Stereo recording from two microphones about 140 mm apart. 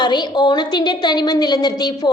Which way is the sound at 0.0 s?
30° left (ahead or behind).